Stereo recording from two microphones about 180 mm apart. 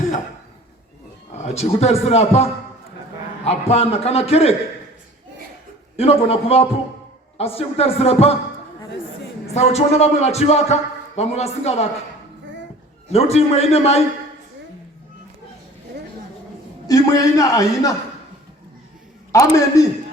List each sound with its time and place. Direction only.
1.3 s a man's voice: 35° left (ahead or behind)
6.0 s a man's voice: 35° left (ahead or behind)
9.6 s a man's voice: 35° left (ahead or behind)
13.1 s a man's voice: 35° left (ahead or behind)
16.8 s a man's voice: 20° left (ahead or behind)
19.3 s a man's voice: 20° left (ahead or behind)